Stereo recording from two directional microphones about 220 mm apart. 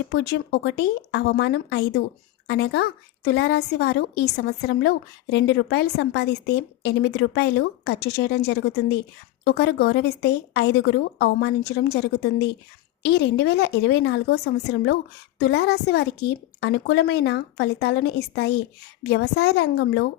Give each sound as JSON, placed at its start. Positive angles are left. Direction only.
{"t": 0.1, "sound": "a woman's voice", "side_deg": 50}